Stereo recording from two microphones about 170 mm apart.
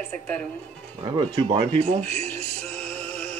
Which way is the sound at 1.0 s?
30° right (ahead or behind).